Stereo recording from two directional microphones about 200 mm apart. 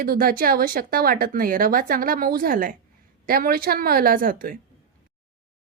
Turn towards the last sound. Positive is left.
turn(degrees=-45)  # may be behind; listen again after turning